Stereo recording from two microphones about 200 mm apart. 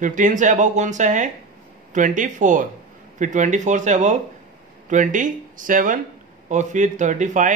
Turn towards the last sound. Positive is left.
turn(degrees=-40)  # may be behind; listen again after turning